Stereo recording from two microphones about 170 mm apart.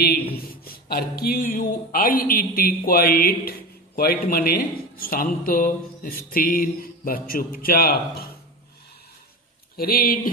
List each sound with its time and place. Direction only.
0.0 s speech: 60° left (ahead or behind)
9.8 s speech: 60° left (ahead or behind)